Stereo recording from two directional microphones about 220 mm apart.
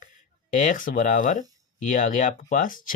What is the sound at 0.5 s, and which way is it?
Speech, 35° left (ahead or behind).